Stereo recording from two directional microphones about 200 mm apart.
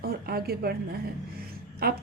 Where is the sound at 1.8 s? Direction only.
50° right (ahead or behind).